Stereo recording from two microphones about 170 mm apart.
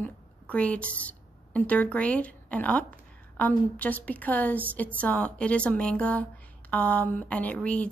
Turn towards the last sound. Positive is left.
turn(degrees=10)  # may be behind; listen again after turning